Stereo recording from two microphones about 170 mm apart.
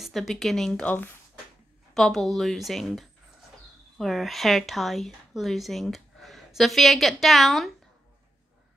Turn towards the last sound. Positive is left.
turn(degrees=0)  # may be behind; listen again after turning